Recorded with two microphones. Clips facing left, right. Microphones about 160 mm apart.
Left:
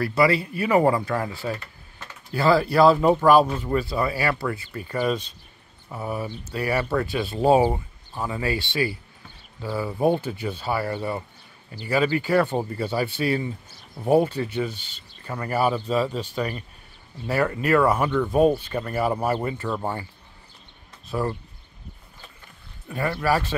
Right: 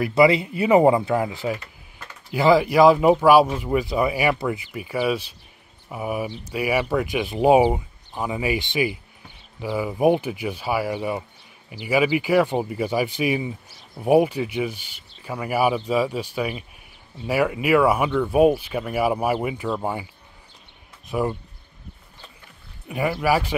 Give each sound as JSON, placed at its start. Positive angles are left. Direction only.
{"t": 0.0, "sound": "speech", "side_deg": -20}
{"t": 21.1, "sound": "speech", "side_deg": -15}
{"t": 22.8, "sound": "speech", "side_deg": -15}